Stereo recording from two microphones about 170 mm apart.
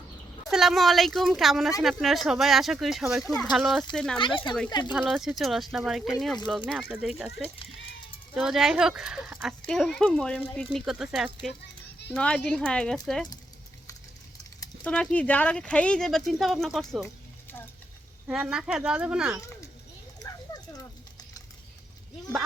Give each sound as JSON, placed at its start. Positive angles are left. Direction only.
{"t": 0.5, "sound": "speech", "side_deg": 0}
{"t": 14.8, "sound": "speech", "side_deg": 5}
{"t": 18.3, "sound": "speech", "side_deg": -5}
{"t": 20.2, "sound": "a sound", "side_deg": 20}